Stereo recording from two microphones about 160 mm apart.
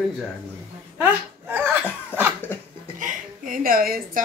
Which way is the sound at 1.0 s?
10° right (ahead or behind).